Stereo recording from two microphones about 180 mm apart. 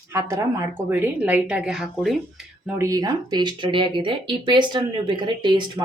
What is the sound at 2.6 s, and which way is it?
Speech, 15° right (ahead or behind).